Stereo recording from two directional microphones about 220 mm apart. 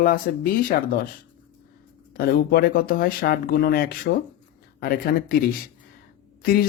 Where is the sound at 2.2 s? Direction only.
45° left (ahead or behind).